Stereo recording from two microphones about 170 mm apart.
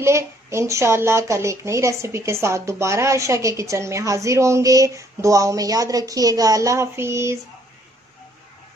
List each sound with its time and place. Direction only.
0.0 s a woman's voice: 15° right (ahead or behind)